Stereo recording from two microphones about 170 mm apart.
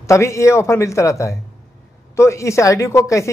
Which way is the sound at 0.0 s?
15° left (ahead or behind).